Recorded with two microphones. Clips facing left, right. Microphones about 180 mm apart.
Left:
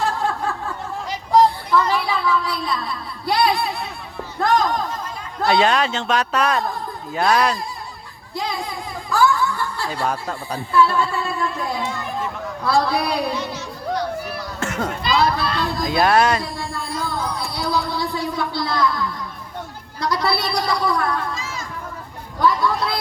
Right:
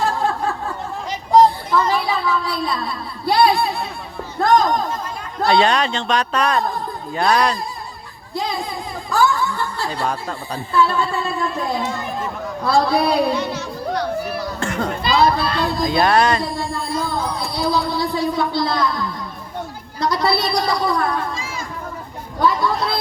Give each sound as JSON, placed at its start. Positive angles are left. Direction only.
{"t": 0.2, "sound": "a sound", "side_deg": -25}
{"t": 4.4, "sound": "speech", "side_deg": -30}
{"t": 5.5, "sound": "speech", "side_deg": 5}
{"t": 9.0, "sound": "snicker", "side_deg": -25}
{"t": 9.9, "sound": "speech", "side_deg": 5}
{"t": 10.7, "sound": "a woman's voice", "side_deg": -25}
{"t": 11.8, "sound": "speech", "side_deg": -45}
{"t": 12.6, "sound": "a woman's voice", "side_deg": -25}
{"t": 13.3, "sound": "a sound", "side_deg": -60}
{"t": 14.6, "sound": "a sound", "side_deg": 5}
{"t": 15.0, "sound": "a child's voice", "side_deg": -30}
{"t": 15.9, "sound": "speech", "side_deg": 5}
{"t": 16.6, "sound": "music", "side_deg": -25}
{"t": 20.0, "sound": "a woman's voice", "side_deg": -25}